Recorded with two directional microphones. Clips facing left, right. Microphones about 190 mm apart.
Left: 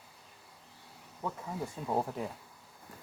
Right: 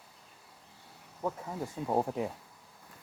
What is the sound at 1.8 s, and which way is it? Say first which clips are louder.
Speech: right 3 dB; 15° right (ahead or behind).